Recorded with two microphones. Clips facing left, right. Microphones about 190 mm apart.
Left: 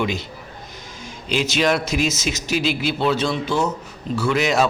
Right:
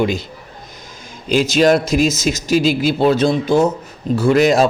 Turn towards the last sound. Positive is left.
turn(degrees=-40)  # may be behind; listen again after turning